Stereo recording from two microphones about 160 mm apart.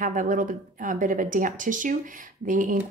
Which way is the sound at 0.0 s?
55° right (ahead or behind).